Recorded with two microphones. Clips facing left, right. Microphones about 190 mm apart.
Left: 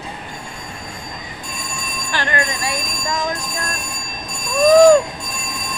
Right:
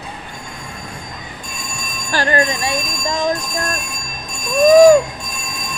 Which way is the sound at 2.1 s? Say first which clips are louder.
Right 5 dB; 40° right (ahead or behind).